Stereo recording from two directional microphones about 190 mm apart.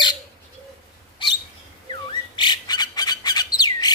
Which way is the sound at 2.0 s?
25° left (ahead or behind).